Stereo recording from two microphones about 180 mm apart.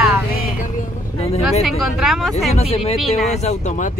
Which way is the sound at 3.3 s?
40° left (ahead or behind).